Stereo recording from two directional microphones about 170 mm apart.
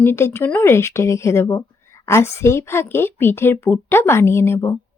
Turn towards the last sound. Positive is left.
turn(degrees=15)  # may be behind; listen again after turning